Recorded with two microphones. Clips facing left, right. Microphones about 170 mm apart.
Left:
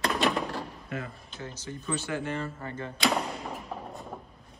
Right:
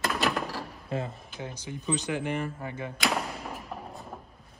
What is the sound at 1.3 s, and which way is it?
Speech, 15° right (ahead or behind).